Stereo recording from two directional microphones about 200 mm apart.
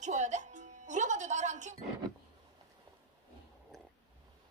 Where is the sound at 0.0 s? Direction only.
35° right (ahead or behind).